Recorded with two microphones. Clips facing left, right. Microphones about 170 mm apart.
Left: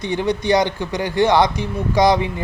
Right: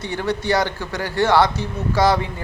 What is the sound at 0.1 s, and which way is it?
Speech, 15° left (ahead or behind).